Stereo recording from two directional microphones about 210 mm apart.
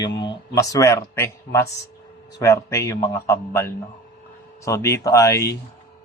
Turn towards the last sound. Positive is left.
turn(degrees=15)  # may be behind; listen again after turning